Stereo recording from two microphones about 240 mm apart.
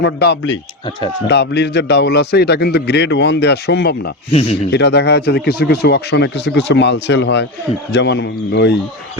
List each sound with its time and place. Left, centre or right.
0.0 s a man's voice: left
4.3 s speech: left
4.7 s a man's voice: left